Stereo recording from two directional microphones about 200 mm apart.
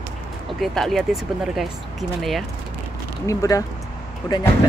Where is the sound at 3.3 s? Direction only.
15° left (ahead or behind).